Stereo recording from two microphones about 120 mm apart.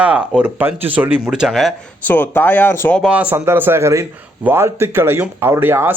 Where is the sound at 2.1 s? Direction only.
15° left (ahead or behind).